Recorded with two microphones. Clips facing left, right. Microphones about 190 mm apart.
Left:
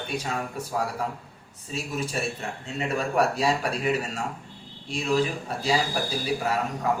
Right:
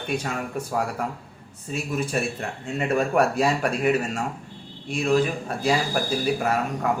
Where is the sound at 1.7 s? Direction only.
55° right (ahead or behind).